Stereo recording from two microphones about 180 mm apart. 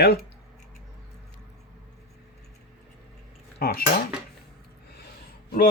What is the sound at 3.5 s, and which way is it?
Speech, 60° left (ahead or behind).